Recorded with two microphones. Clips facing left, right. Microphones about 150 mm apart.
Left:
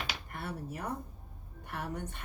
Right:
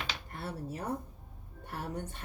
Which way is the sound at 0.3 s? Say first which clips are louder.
Right 1 dB; 30° right (ahead or behind).